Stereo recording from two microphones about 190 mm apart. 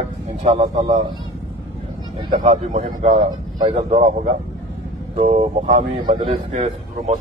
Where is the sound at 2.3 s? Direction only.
40° right (ahead or behind).